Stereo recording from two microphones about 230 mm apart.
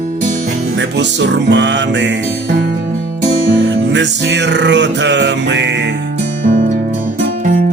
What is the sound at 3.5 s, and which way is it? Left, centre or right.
Music, right.